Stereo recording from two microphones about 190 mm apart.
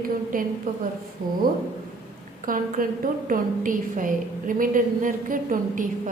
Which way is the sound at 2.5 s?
45° right (ahead or behind).